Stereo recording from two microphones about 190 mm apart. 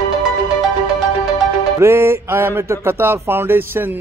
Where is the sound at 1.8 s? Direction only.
15° right (ahead or behind).